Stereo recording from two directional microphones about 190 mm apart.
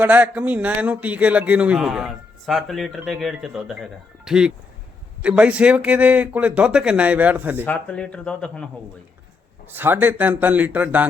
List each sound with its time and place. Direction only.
0.0 s a man's voice: 10° right (ahead or behind)
7.6 s speech: 10° left (ahead or behind)
9.7 s speech: 10° right (ahead or behind)